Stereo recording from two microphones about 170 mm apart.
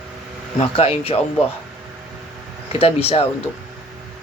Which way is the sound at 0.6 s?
35° left (ahead or behind).